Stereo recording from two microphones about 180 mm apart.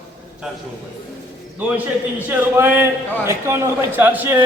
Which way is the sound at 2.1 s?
10° right (ahead or behind).